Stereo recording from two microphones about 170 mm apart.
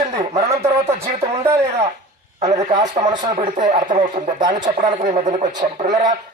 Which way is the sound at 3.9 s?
50° right (ahead or behind).